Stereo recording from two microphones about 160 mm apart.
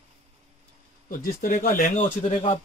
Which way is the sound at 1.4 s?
60° left (ahead or behind).